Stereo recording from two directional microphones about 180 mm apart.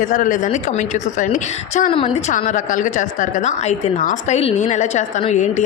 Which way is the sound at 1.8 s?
30° left (ahead or behind).